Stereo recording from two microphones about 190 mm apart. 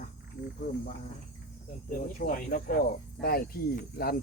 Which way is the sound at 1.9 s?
45° left (ahead or behind).